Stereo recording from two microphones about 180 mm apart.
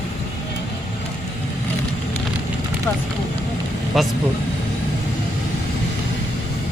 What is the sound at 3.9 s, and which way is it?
Speech, centre (ahead or behind).